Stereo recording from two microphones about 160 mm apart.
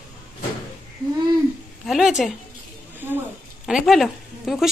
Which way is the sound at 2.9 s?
10° right (ahead or behind).